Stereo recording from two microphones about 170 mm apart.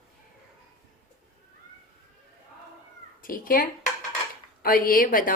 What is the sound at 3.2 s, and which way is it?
A woman's voice, 55° left (ahead or behind).